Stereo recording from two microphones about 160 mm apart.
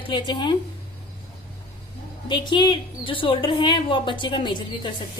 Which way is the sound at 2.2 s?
30° left (ahead or behind).